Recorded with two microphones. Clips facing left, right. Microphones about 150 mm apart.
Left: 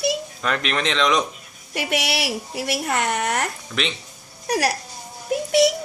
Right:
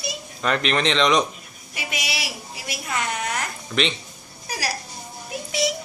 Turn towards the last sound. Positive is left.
turn(degrees=65)  # may be behind; listen again after turning